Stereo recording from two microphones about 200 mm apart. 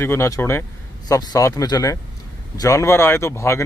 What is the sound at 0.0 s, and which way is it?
Speech, 15° left (ahead or behind).